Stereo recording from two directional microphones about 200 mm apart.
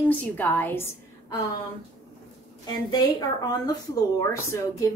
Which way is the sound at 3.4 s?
20° left (ahead or behind).